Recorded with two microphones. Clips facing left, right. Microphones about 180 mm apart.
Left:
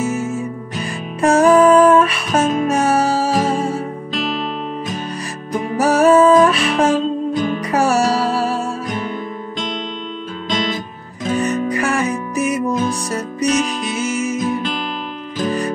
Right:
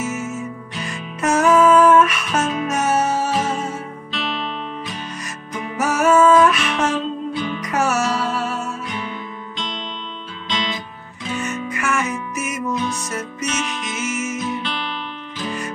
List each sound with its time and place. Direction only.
0.0 s music: 35° left (ahead or behind)
10.5 s music: 45° left (ahead or behind)